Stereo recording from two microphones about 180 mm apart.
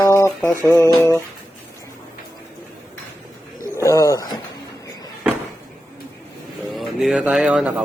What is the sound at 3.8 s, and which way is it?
Speech, 15° left (ahead or behind).